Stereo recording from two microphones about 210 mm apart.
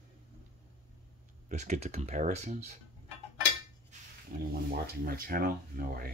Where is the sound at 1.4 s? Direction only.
35° right (ahead or behind).